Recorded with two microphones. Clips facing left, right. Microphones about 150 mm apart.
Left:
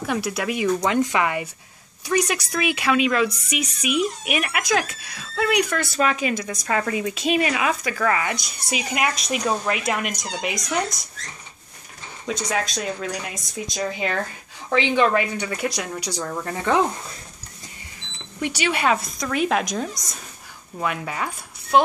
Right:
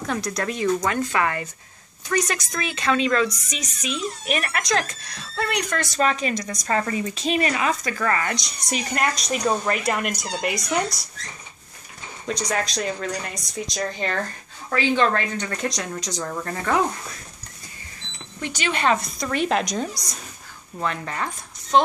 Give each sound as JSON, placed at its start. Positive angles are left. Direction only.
{"t": 0.0, "sound": "speech", "side_deg": 5}
{"t": 12.3, "sound": "speech", "side_deg": 5}
{"t": 14.7, "sound": "speech", "side_deg": 15}
{"t": 18.4, "sound": "speech", "side_deg": 10}